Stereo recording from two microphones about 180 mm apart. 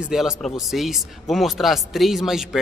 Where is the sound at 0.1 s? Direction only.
Centre (ahead or behind).